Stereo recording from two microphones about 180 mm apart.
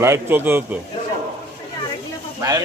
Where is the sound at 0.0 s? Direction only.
15° right (ahead or behind).